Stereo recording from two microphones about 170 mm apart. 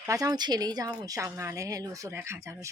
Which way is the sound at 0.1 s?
20° right (ahead or behind).